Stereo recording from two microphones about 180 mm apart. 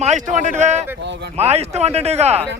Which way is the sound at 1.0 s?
70° right (ahead or behind).